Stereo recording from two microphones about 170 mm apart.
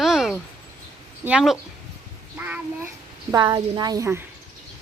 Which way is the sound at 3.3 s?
25° right (ahead or behind).